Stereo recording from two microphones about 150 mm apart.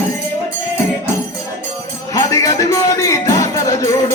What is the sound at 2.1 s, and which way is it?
Music, 20° left (ahead or behind).